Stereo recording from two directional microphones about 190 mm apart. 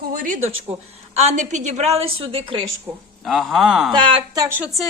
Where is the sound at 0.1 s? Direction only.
45° right (ahead or behind); by 2.6 s 30° right (ahead or behind).